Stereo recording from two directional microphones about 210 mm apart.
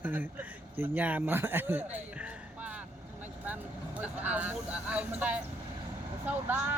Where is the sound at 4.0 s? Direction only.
5° right (ahead or behind).